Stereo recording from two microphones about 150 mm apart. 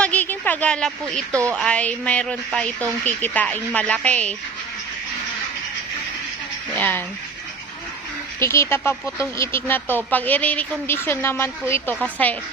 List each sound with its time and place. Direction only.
0.0 s a sound: 10° left (ahead or behind)
1.3 s a woman's voice: 20° right (ahead or behind)
1.5 s speech: 10° left (ahead or behind)
6.7 s speech: 10° left (ahead or behind)
8.4 s speech: 15° left (ahead or behind)